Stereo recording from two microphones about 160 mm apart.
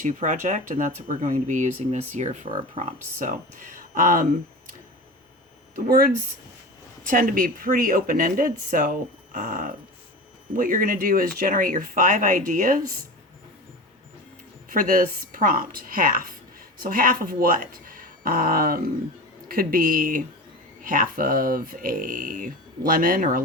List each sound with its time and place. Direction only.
0.0 s speech: 50° right (ahead or behind)
5.7 s speech: 70° right (ahead or behind)
14.7 s a woman's voice: 60° right (ahead or behind)